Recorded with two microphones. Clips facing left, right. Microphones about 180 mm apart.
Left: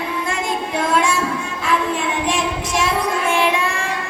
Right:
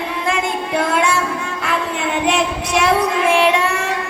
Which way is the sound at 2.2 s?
65° right (ahead or behind).